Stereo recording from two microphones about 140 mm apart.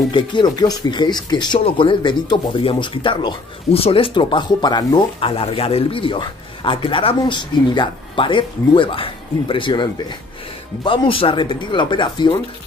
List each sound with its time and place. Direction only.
0.1 s speech: 35° left (ahead or behind)